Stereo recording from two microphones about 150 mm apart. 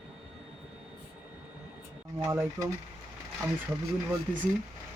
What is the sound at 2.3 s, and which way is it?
Speech, 20° right (ahead or behind).